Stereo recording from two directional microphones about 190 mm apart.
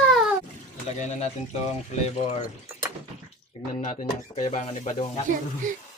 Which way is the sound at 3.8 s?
35° left (ahead or behind).